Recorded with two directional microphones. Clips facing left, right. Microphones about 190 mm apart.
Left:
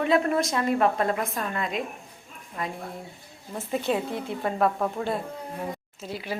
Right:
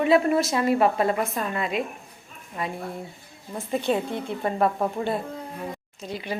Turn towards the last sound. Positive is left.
turn(degrees=5)  # may be behind; listen again after turning